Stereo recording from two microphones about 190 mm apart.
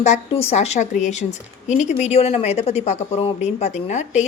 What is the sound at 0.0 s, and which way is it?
A woman's voice, 35° left (ahead or behind).